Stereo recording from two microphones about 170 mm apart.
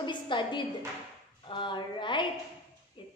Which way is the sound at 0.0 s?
25° left (ahead or behind).